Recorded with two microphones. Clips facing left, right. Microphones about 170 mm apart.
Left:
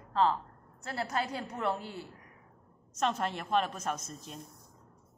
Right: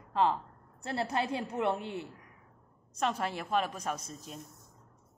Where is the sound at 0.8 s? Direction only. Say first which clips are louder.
Right 2 dB; 30° right (ahead or behind).